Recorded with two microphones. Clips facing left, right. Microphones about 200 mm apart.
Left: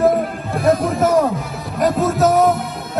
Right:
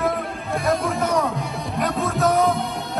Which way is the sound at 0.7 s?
Centre (ahead or behind).